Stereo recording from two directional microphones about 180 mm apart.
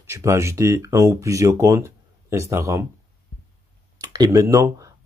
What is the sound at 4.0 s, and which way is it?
Speech, 20° right (ahead or behind).